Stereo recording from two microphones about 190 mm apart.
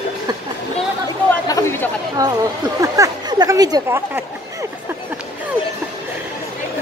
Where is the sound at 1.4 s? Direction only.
15° left (ahead or behind).